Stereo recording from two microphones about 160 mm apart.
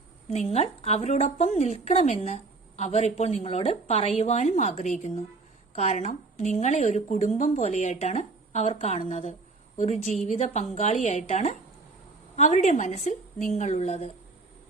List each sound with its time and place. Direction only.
0.3 s a woman's voice: 40° left (ahead or behind)